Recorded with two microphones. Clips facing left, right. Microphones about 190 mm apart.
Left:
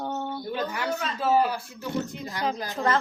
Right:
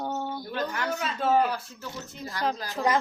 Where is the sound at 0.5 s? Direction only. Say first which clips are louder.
Left 1 dB; 10° left (ahead or behind).